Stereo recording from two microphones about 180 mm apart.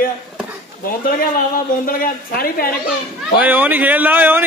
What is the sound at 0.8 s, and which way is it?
A man's voice, 55° left (ahead or behind).